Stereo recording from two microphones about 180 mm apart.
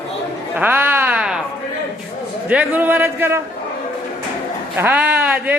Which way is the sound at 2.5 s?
10° right (ahead or behind).